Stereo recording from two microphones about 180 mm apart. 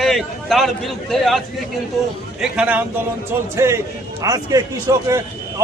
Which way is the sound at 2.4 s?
5° right (ahead or behind).